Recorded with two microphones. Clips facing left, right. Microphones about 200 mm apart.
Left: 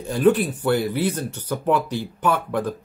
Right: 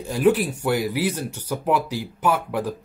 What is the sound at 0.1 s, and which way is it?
Speech, 10° right (ahead or behind).